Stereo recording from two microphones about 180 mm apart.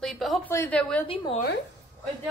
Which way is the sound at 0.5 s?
10° left (ahead or behind).